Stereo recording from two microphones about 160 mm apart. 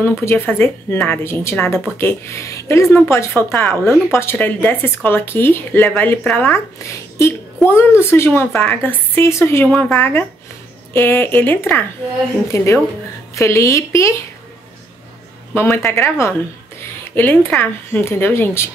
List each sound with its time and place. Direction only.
0.0 s speech: 15° left (ahead or behind)
7.7 s speech: 15° left (ahead or behind)
15.5 s speech: 15° left (ahead or behind)